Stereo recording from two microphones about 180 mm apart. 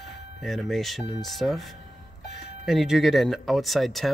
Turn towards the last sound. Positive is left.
turn(degrees=0)  # may be behind; listen again after turning